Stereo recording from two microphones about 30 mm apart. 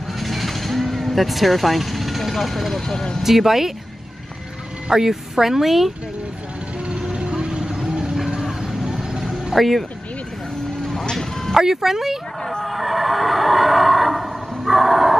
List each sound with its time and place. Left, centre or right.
0.2 s vehicle: centre
3.2 s speech: centre
4.8 s speech: centre
6.9 s music: right
7.3 s vehicle: right
8.4 s vehicle: centre
11.1 s music: centre
11.6 s speech: centre
12.6 s neigh: centre